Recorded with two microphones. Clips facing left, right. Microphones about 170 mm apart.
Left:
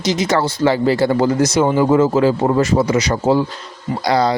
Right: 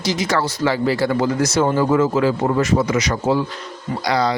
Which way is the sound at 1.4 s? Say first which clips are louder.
Left 3 dB; 15° left (ahead or behind).